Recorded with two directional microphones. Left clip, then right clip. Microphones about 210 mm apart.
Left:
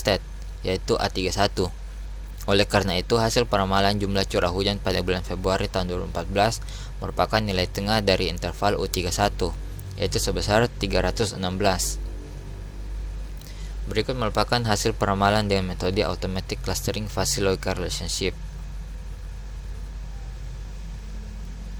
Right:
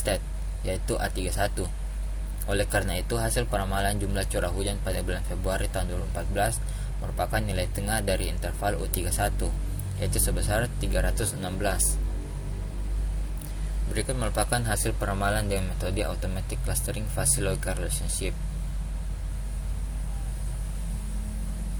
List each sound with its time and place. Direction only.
0.1 s speech: 45° left (ahead or behind)
13.9 s a man's voice: 45° left (ahead or behind)